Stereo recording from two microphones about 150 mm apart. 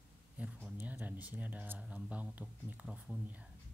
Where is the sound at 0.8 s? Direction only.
10° right (ahead or behind).